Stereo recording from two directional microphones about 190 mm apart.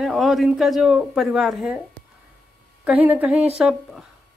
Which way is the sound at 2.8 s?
10° right (ahead or behind).